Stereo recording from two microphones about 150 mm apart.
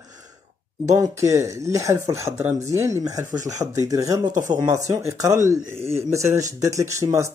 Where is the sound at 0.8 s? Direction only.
20° right (ahead or behind).